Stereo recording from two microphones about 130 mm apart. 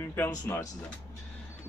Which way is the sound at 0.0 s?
20° left (ahead or behind).